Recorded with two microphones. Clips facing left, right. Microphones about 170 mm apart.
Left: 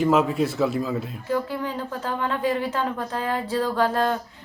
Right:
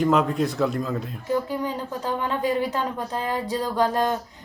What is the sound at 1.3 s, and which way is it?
A woman's voice, 15° right (ahead or behind).